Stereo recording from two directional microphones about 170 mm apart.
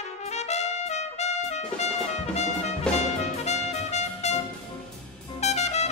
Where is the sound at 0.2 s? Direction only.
40° left (ahead or behind).